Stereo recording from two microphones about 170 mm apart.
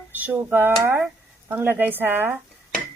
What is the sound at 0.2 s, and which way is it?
Speech, 10° right (ahead or behind).